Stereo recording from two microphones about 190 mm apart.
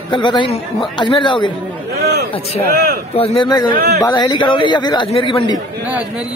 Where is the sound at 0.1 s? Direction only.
25° left (ahead or behind).